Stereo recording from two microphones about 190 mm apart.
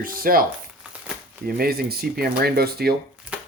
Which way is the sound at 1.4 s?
55° right (ahead or behind).